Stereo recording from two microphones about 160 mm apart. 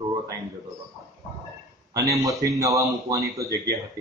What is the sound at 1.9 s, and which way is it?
Speech, 20° right (ahead or behind).